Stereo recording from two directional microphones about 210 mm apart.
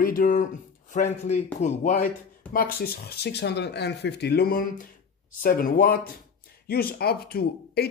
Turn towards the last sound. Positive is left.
turn(degrees=50)  # may be behind; listen again after turning